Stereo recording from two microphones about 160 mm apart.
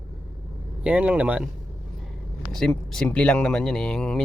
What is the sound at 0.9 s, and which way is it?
Speech, 10° right (ahead or behind).